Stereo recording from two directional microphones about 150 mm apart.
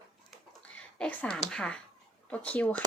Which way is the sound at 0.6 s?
10° left (ahead or behind).